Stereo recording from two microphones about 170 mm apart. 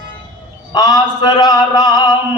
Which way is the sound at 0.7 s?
20° left (ahead or behind).